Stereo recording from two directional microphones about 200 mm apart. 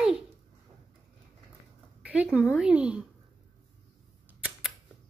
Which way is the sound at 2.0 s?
5° right (ahead or behind).